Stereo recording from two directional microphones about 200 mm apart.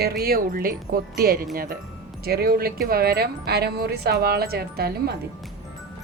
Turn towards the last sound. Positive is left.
turn(degrees=-50)  # may be behind; listen again after turning